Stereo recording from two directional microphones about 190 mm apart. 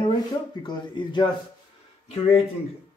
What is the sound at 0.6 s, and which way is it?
Speech, 25° left (ahead or behind).